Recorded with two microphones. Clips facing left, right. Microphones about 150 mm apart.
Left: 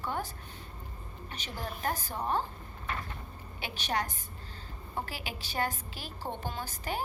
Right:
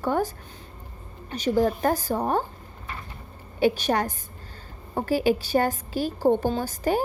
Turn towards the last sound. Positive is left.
turn(degrees=-45)  # may be behind; listen again after turning